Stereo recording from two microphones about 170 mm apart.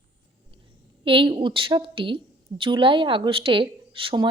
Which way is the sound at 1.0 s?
30° right (ahead or behind).